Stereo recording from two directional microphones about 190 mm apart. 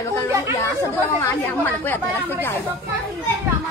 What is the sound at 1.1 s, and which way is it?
Speech, 10° left (ahead or behind).